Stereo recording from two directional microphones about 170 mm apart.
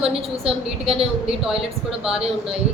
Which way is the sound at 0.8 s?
35° right (ahead or behind).